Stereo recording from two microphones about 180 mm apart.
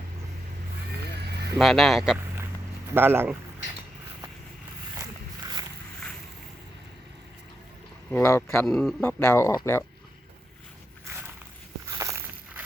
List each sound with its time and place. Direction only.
1.5 s speech: centre (ahead or behind)
2.9 s speech: 10° right (ahead or behind)
8.1 s speech: 10° left (ahead or behind)
8.6 s speech: centre (ahead or behind)
11.9 s walk: 15° right (ahead or behind)